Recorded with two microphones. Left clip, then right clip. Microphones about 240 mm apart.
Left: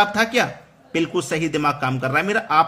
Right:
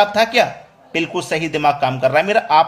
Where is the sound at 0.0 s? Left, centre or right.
Centre.